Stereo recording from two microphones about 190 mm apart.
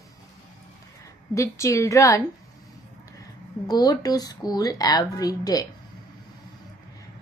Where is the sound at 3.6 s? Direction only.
20° left (ahead or behind).